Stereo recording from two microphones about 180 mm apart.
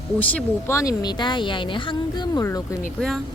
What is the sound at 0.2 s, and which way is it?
Speech, 10° left (ahead or behind).